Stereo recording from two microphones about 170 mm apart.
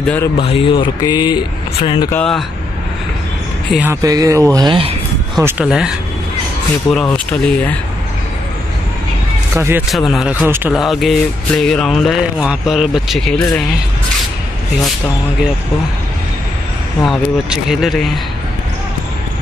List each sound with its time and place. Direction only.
0.0 s a man's voice: 10° left (ahead or behind)
0.4 s speech: 30° left (ahead or behind)
2.0 s speech: 5° left (ahead or behind)
3.7 s speech: 15° right (ahead or behind); by 4.9 s 30° right (ahead or behind)
5.4 s a man's voice: 15° right (ahead or behind); by 7.7 s 5° left (ahead or behind)
9.6 s a man's voice: 15° right (ahead or behind)
9.8 s speech: centre (ahead or behind)
17.0 s speech: centre (ahead or behind)